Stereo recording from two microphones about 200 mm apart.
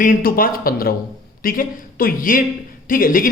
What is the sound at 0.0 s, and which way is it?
Speech, 45° left (ahead or behind).